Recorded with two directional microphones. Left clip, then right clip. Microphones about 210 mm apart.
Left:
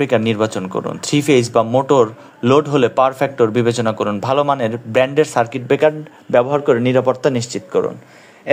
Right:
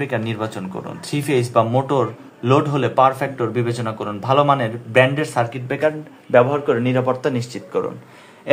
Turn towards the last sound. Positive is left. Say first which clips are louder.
# left 5 dB
turn(degrees=20)  # may be behind; listen again after turning